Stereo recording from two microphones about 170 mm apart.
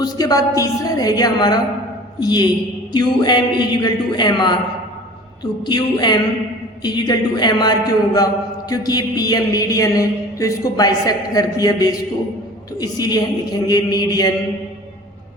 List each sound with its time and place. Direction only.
0.0 s a woman's voice: 20° left (ahead or behind)